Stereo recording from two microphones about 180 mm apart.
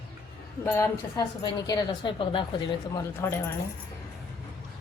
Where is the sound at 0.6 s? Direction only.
15° left (ahead or behind).